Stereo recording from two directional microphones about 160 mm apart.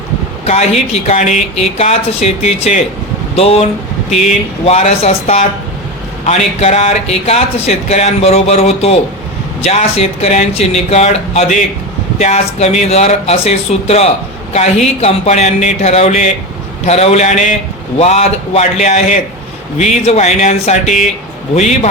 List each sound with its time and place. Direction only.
0.4 s speech: 45° left (ahead or behind)